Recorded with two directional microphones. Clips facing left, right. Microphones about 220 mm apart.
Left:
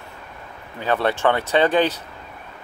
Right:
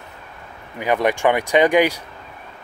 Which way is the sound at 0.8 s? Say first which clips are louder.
Right 2 dB; 15° right (ahead or behind).